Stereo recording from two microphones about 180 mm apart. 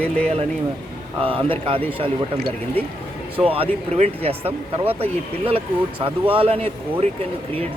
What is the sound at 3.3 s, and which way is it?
Speech, 30° right (ahead or behind).